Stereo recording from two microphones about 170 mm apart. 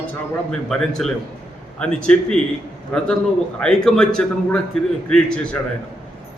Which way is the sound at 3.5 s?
5° left (ahead or behind).